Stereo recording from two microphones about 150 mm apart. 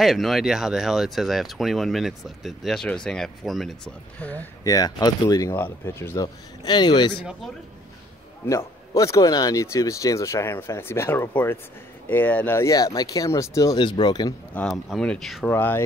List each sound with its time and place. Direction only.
0.0 s speech: centre (ahead or behind)
4.6 s speech: 25° left (ahead or behind)
5.5 s speech: 15° left (ahead or behind)
8.5 s speech: 20° left (ahead or behind)
14.5 s speech: 10° left (ahead or behind)
15.5 s speech: 15° left (ahead or behind)